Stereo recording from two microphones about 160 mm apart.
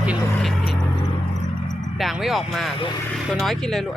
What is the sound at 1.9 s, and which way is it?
Speech, centre (ahead or behind).